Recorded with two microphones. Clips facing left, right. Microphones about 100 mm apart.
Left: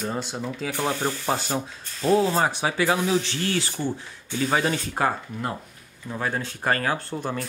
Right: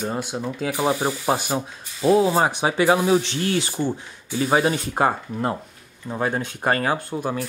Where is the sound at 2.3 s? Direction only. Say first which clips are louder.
Right 3 dB; 20° right (ahead or behind).